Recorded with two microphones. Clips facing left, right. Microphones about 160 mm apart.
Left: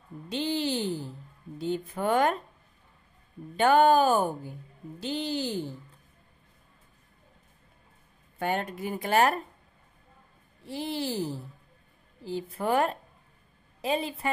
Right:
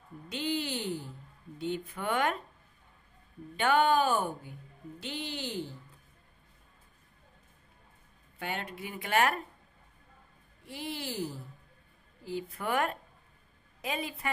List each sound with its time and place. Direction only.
0.3 s speech: 30° left (ahead or behind)
3.5 s speech: 40° left (ahead or behind)
8.4 s speech: 45° left (ahead or behind)
10.6 s a woman's voice: 30° left (ahead or behind)